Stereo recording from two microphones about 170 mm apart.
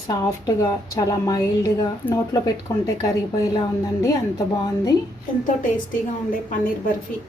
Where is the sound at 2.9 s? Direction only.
20° left (ahead or behind).